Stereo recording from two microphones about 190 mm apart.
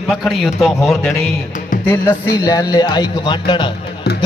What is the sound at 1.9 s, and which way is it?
A man's voice, 20° left (ahead or behind).